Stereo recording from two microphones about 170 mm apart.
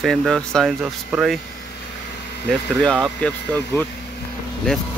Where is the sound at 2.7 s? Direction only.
Centre (ahead or behind).